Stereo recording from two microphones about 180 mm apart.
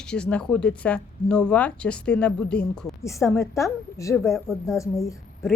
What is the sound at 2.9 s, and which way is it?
A woman's voice, 15° left (ahead or behind).